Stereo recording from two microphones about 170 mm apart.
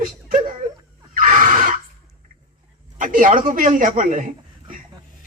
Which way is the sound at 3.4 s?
50° right (ahead or behind).